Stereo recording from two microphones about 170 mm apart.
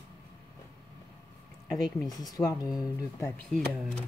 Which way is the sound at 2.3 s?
20° left (ahead or behind).